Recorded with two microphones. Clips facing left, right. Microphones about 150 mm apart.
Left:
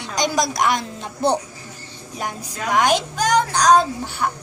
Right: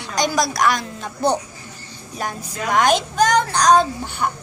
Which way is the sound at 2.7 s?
10° left (ahead or behind).